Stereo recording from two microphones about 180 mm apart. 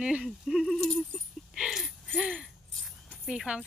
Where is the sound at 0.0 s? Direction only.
5° right (ahead or behind).